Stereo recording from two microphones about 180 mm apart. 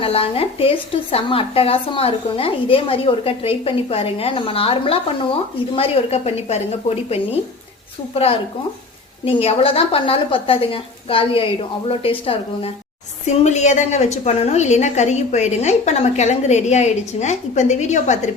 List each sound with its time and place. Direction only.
0.0 s a woman's voice: 30° left (ahead or behind)